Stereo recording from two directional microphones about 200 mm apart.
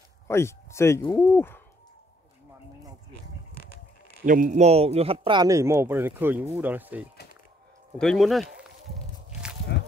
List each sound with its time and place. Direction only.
0.3 s speech: 15° left (ahead or behind)
4.3 s speech: 40° right (ahead or behind); by 8.5 s centre (ahead or behind)
9.7 s a sound: 60° left (ahead or behind)